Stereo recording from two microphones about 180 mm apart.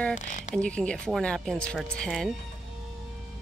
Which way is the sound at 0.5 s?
5° left (ahead or behind).